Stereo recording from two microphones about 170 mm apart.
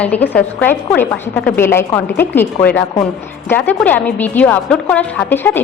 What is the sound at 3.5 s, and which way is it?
A woman's voice, 10° left (ahead or behind).